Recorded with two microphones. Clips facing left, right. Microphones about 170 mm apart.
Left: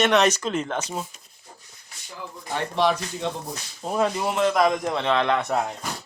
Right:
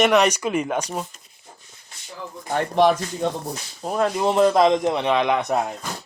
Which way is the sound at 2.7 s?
50° right (ahead or behind).